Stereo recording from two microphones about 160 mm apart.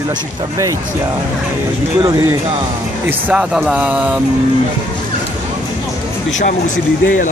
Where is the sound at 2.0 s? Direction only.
20° right (ahead or behind).